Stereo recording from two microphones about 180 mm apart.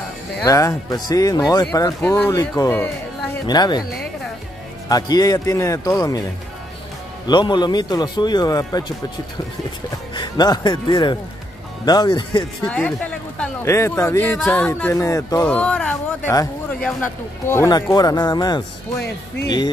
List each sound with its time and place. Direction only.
0.5 s speech: 20° left (ahead or behind)
4.8 s speech: 20° left (ahead or behind)
7.2 s speech: 25° left (ahead or behind)
10.1 s speech: 25° left (ahead or behind)
12.6 s speech: 5° left (ahead or behind)
15.4 s speech: 5° left (ahead or behind)
17.5 s speech: 15° left (ahead or behind)